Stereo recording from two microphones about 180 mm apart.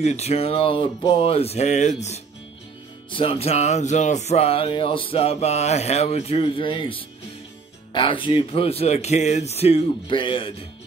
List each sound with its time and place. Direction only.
0.0 s music: 35° left (ahead or behind)